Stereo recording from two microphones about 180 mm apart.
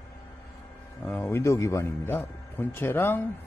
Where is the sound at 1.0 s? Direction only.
10° left (ahead or behind).